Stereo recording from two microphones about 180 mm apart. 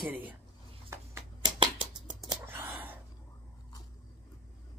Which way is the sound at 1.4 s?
30° right (ahead or behind).